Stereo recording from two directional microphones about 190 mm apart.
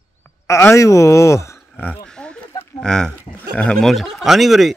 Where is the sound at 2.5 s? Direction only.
15° left (ahead or behind).